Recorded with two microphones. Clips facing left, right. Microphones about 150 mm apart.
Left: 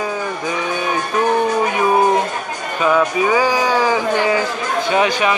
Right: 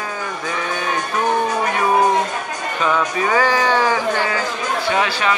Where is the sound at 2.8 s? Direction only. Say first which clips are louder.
Left 4 dB; 10° left (ahead or behind).